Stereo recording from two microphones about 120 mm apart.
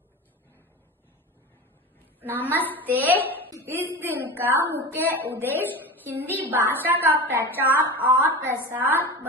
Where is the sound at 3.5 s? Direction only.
20° right (ahead or behind).